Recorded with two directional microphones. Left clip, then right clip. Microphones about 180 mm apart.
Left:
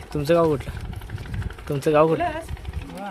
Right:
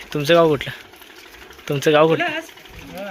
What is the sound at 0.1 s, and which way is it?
Speech, 5° left (ahead or behind).